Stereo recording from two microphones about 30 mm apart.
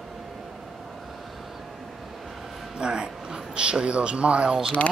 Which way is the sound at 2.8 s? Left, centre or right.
Right.